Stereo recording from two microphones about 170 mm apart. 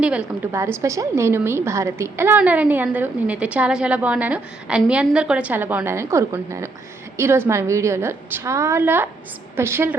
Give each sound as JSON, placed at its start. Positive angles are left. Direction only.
{"t": 0.0, "sound": "a woman's voice", "side_deg": -5}
{"t": 0.5, "sound": "a woman's voice", "side_deg": -15}